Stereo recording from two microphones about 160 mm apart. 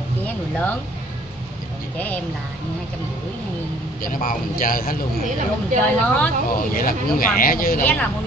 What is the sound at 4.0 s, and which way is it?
Speech, 60° left (ahead or behind).